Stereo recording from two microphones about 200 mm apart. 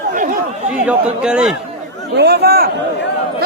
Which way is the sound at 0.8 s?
5° right (ahead or behind).